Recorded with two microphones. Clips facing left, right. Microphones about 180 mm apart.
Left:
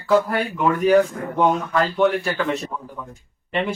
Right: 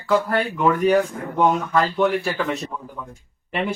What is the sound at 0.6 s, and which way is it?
Speech, centre (ahead or behind).